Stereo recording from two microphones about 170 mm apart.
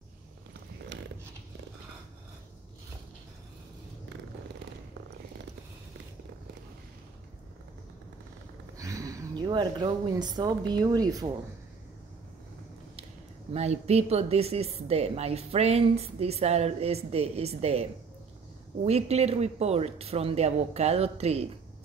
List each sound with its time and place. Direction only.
8.7 s speech: 20° right (ahead or behind)
13.5 s a woman's voice: 40° right (ahead or behind)
18.9 s a woman's voice: 40° right (ahead or behind)